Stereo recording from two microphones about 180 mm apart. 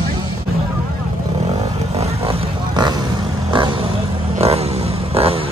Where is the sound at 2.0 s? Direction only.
30° right (ahead or behind).